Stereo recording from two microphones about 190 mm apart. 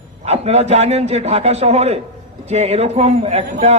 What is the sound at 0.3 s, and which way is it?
A man's voice, 35° right (ahead or behind).